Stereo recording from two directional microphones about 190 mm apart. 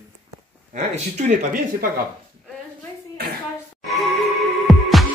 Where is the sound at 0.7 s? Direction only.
40° right (ahead or behind).